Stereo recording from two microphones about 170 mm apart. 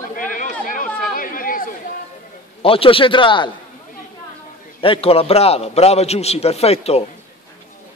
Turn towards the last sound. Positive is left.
turn(degrees=35)  # may be behind; listen again after turning